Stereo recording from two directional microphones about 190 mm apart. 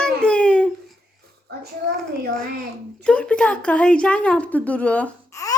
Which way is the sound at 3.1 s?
5° left (ahead or behind).